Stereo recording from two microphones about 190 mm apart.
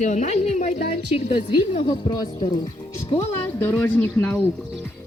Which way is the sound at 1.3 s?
25° left (ahead or behind).